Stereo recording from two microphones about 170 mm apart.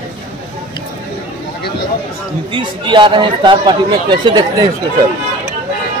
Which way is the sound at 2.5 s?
30° right (ahead or behind).